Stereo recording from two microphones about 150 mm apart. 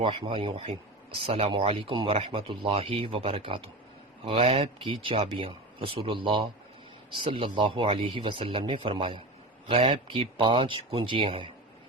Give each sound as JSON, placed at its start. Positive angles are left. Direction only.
{"t": 0.0, "sound": "speech", "side_deg": -35}